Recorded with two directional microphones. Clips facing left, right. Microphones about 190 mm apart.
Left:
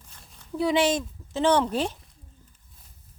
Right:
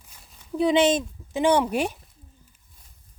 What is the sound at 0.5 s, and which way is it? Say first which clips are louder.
Speech: right 3 dB; 20° right (ahead or behind).